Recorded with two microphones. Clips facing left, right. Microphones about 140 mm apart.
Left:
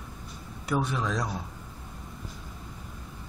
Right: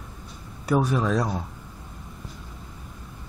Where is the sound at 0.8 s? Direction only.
35° right (ahead or behind).